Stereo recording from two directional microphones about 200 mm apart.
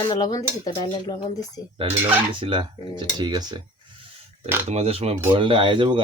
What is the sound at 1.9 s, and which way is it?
Speech, 25° right (ahead or behind).